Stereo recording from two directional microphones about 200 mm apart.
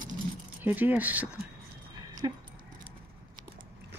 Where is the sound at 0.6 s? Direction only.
10° right (ahead or behind).